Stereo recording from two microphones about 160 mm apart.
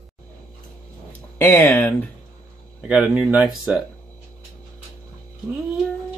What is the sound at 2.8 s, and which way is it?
Speech, 10° right (ahead or behind).